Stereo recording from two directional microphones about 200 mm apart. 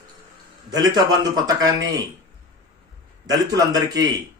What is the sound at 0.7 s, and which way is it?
A man's voice, 20° right (ahead or behind).